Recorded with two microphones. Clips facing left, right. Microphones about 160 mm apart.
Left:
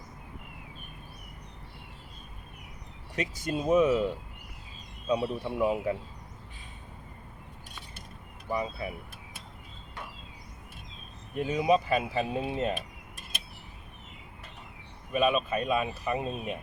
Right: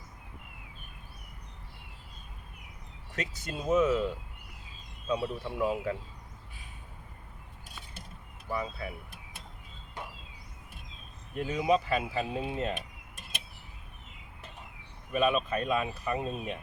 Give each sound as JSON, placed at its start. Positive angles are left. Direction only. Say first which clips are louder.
{"t": 3.2, "sound": "speech", "louder": "left 6 dB", "side_deg": 10}
{"t": 8.4, "sound": "speech", "louder": "left 3 dB", "side_deg": 15}
{"t": 11.3, "sound": "speech", "louder": "left 2 dB", "side_deg": 20}
{"t": 15.1, "sound": "speech", "louder": "left 1 dB", "side_deg": 5}